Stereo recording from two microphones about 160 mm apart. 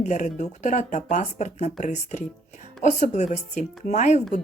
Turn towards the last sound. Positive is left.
turn(degrees=50)  # may be behind; listen again after turning